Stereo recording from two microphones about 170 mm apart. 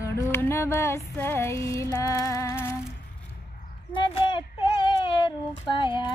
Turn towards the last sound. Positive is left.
turn(degrees=30)  # may be behind; listen again after turning